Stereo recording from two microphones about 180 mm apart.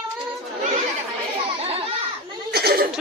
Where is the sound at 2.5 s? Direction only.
60° right (ahead or behind).